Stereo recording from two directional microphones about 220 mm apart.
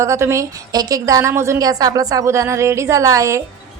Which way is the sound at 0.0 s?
15° right (ahead or behind).